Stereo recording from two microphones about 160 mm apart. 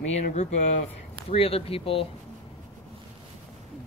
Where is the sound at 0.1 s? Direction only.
45° left (ahead or behind).